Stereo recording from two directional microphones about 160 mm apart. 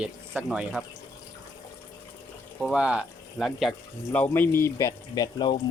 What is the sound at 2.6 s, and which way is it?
Speech, 5° right (ahead or behind).